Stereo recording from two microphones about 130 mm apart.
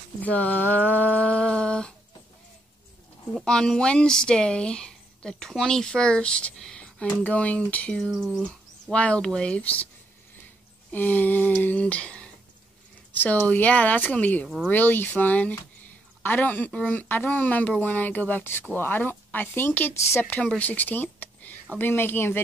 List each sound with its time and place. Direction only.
0.2 s humming: 10° left (ahead or behind)
3.3 s speech: 5° left (ahead or behind)
8.1 s speech: centre (ahead or behind)
8.8 s speech: 10° left (ahead or behind)
10.9 s speech: 15° left (ahead or behind)